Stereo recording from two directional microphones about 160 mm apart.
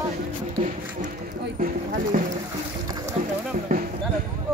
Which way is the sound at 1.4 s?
60° right (ahead or behind).